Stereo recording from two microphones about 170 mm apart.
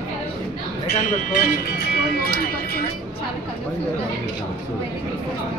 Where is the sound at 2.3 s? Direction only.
60° left (ahead or behind).